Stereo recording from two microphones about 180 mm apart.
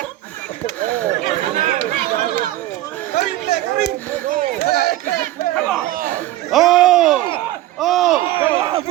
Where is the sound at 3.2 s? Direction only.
65° left (ahead or behind).